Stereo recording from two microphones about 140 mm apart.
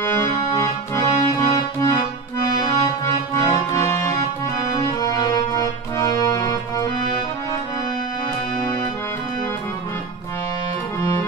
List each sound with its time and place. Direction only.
0.0 s accordion: 20° left (ahead or behind)
4.7 s music: 25° left (ahead or behind)